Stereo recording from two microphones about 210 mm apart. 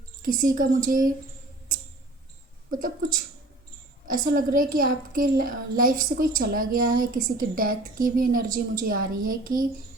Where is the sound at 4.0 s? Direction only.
40° right (ahead or behind).